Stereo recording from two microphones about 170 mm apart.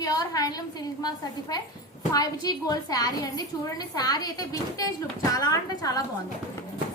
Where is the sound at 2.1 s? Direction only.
20° left (ahead or behind).